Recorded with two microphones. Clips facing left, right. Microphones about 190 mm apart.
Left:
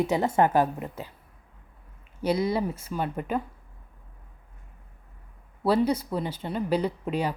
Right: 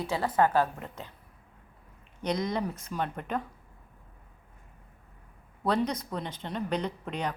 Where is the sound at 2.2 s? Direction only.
5° left (ahead or behind).